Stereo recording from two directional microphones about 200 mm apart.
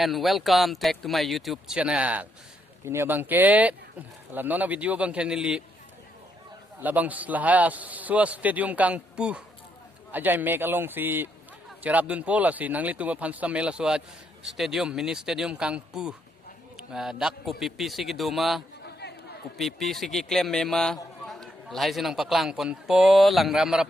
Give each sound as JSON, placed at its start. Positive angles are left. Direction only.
{"t": 0.0, "sound": "a man's voice", "side_deg": 0}
{"t": 6.8, "sound": "a man's voice", "side_deg": -10}
{"t": 18.9, "sound": "chatter", "side_deg": 55}
{"t": 19.5, "sound": "a man's voice", "side_deg": 0}